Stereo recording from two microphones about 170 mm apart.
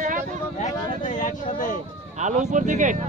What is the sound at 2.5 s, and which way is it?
Speech, 45° right (ahead or behind).